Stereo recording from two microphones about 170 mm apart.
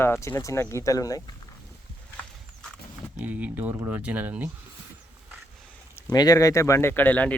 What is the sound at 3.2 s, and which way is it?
Speech, 10° right (ahead or behind).